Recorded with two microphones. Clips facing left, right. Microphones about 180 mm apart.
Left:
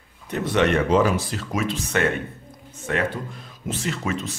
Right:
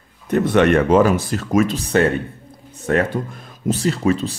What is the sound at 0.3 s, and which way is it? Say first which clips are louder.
A man's voice: right 6 dB; 55° right (ahead or behind).